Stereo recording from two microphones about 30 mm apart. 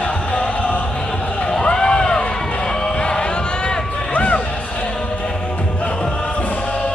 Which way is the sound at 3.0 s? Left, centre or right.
Left.